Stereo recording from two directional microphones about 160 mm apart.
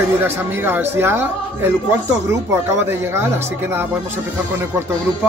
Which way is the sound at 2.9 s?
15° right (ahead or behind).